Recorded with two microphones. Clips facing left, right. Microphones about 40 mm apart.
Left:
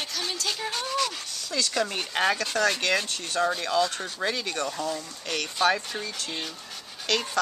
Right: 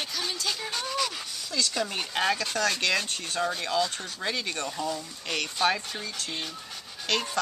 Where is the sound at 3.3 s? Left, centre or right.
Centre.